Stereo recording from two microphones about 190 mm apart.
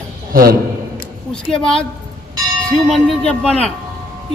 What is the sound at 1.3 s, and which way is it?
Speech, 5° left (ahead or behind).